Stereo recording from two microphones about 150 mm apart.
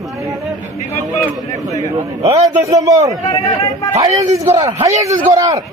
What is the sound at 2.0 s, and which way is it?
Speech, 45° right (ahead or behind).